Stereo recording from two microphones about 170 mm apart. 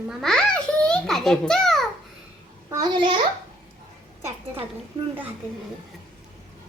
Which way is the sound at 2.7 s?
25° right (ahead or behind).